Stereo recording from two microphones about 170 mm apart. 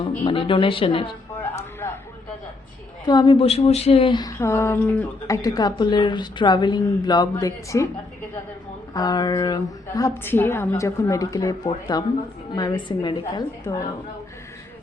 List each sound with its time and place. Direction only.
0.3 s a woman's voice: 30° left (ahead or behind)
1.4 s a sound: 15° left (ahead or behind)
3.1 s a woman's voice: 25° left (ahead or behind); by 5.4 s 10° left (ahead or behind)
5.4 s a woman's voice: 20° left (ahead or behind)
8.9 s a woman's voice: 25° left (ahead or behind)